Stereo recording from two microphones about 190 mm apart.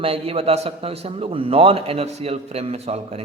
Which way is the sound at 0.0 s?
30° right (ahead or behind).